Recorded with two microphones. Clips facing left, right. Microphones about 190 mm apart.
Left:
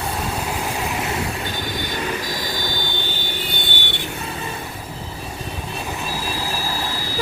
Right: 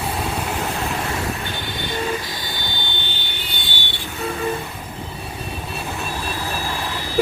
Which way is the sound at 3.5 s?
55° left (ahead or behind).